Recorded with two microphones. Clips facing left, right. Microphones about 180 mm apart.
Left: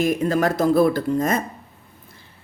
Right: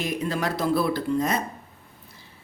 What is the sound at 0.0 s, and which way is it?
Speech, 45° left (ahead or behind).